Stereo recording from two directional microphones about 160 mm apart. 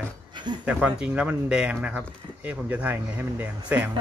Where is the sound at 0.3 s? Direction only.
30° right (ahead or behind).